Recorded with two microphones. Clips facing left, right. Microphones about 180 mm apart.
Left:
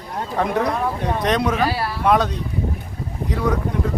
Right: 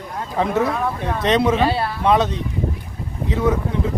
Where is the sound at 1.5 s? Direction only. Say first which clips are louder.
Right 3 dB; 25° right (ahead or behind).